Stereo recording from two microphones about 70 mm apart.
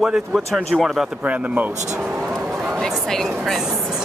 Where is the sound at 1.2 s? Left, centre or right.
Centre.